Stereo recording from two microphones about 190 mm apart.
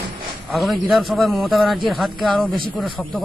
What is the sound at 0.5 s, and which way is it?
A man's voice, centre (ahead or behind).